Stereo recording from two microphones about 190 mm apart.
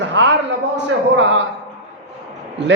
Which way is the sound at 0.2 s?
70° right (ahead or behind).